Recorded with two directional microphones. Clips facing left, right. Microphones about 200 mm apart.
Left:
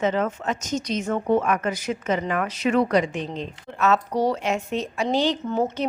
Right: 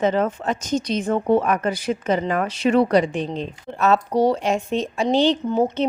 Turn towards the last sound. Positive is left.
turn(degrees=-30)  # may be behind; listen again after turning